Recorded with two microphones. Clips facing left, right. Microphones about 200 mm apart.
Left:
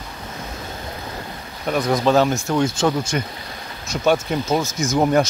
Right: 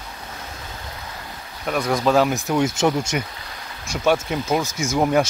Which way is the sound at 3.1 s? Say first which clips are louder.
Left 1 dB; 10° right (ahead or behind).